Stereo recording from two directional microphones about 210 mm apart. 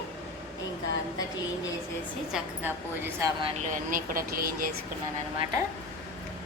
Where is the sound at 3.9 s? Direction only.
40° right (ahead or behind).